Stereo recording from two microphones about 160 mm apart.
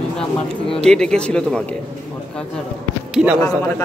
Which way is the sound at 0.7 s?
5° left (ahead or behind).